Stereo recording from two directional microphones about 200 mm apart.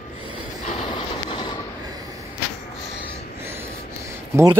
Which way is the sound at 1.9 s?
20° right (ahead or behind).